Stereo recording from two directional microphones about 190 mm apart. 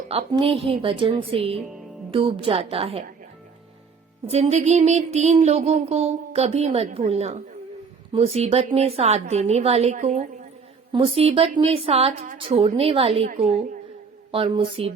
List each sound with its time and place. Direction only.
0.1 s a woman's voice: 30° right (ahead or behind)
4.3 s a sound: 35° right (ahead or behind)
14.3 s a woman's voice: 30° right (ahead or behind)